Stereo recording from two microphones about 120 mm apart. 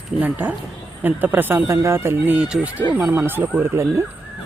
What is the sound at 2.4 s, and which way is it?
Speech, 5° right (ahead or behind).